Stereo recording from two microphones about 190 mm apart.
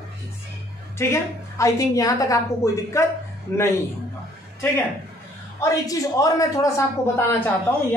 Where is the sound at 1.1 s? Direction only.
15° left (ahead or behind).